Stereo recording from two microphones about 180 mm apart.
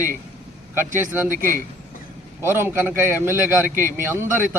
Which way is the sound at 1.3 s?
50° right (ahead or behind).